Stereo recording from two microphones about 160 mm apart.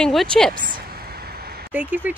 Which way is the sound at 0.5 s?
60° right (ahead or behind).